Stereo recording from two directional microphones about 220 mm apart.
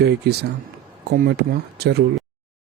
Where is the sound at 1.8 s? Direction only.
50° right (ahead or behind).